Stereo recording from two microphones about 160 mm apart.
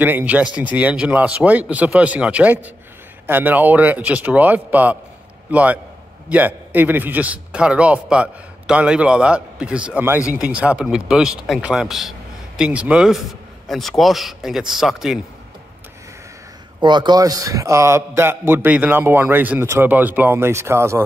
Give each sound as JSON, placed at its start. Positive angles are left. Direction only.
{"t": 0.0, "sound": "a man's voice", "side_deg": -10}
{"t": 16.8, "sound": "a man's voice", "side_deg": -30}